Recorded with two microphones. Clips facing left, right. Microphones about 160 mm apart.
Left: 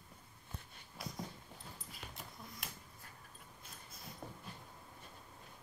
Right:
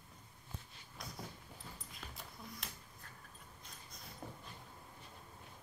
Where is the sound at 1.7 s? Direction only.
Centre (ahead or behind).